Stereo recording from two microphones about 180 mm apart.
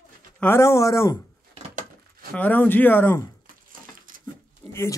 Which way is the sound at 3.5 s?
50° right (ahead or behind).